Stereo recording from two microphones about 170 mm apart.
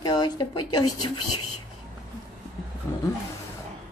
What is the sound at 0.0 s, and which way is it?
Speech, 25° left (ahead or behind).